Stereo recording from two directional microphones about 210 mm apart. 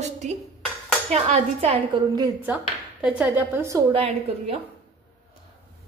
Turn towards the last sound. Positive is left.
turn(degrees=-25)  # may be behind; listen again after turning